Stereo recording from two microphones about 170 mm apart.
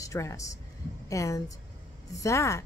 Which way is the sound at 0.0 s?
20° left (ahead or behind).